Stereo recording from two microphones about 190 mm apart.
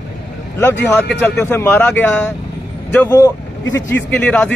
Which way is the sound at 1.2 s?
10° left (ahead or behind).